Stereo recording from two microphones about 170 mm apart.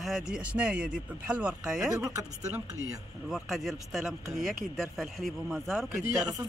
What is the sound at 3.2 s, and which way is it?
Speech, centre (ahead or behind).